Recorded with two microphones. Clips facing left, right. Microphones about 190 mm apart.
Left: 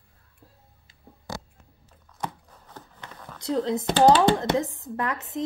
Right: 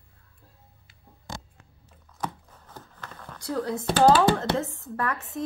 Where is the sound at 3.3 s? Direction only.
20° left (ahead or behind).